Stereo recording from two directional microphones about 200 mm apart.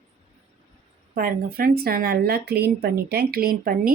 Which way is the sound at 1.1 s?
45° right (ahead or behind).